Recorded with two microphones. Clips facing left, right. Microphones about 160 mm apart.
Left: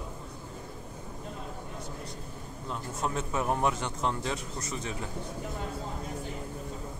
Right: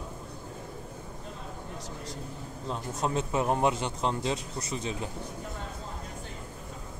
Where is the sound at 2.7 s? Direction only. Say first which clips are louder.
Right 3 dB; 20° right (ahead or behind).